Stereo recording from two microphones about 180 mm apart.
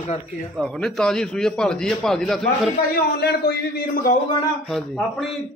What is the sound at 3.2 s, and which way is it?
Speech, 60° left (ahead or behind).